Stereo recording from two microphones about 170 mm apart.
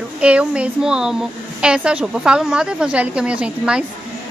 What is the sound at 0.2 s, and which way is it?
A woman's voice, 5° right (ahead or behind).